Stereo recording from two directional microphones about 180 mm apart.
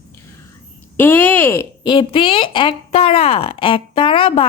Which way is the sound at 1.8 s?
25° left (ahead or behind).